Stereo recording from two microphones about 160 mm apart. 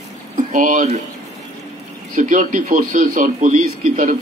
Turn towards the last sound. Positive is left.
turn(degrees=-55)  # may be behind; listen again after turning